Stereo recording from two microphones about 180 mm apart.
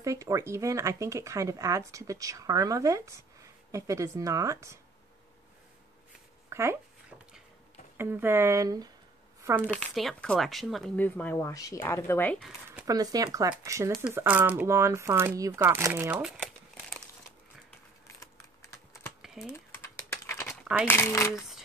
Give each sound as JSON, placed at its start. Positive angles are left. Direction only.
{"t": 0.0, "sound": "speech", "side_deg": -15}
{"t": 6.5, "sound": "a sound", "side_deg": -15}
{"t": 8.0, "sound": "speech", "side_deg": -10}
{"t": 9.7, "sound": "speech", "side_deg": 5}
{"t": 12.8, "sound": "speech", "side_deg": -20}
{"t": 18.0, "sound": "computer keyboard", "side_deg": 15}
{"t": 19.2, "sound": "typing", "side_deg": 0}
{"t": 19.5, "sound": "typing", "side_deg": 15}
{"t": 20.8, "sound": "speech", "side_deg": 10}
{"t": 21.4, "sound": "a sound", "side_deg": 0}